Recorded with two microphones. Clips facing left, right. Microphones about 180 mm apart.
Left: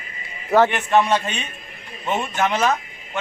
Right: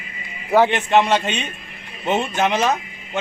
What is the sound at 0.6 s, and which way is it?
A man's voice, 25° right (ahead or behind).